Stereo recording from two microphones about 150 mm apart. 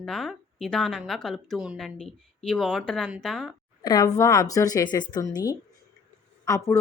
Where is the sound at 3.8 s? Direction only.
25° left (ahead or behind).